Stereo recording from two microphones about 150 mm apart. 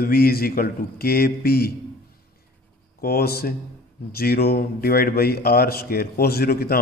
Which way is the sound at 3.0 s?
90° left.